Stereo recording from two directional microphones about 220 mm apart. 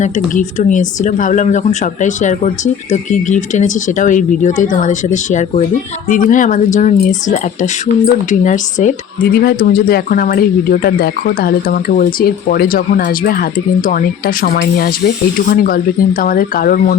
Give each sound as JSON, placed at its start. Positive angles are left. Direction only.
{"t": 0.0, "sound": "speech", "side_deg": 35}